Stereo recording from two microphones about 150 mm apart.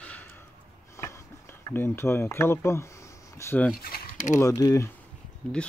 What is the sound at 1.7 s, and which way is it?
Speech, 15° left (ahead or behind).